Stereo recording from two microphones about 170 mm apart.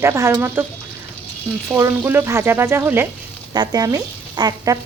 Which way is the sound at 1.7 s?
15° right (ahead or behind).